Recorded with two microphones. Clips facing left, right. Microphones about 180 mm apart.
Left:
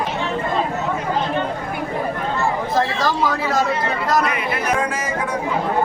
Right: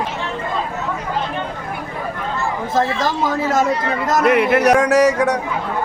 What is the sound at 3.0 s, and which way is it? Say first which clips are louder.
Speech: even; 25° right (ahead or behind).